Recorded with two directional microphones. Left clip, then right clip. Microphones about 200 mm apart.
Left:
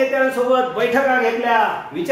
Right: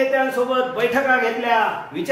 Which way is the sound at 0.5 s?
20° left (ahead or behind).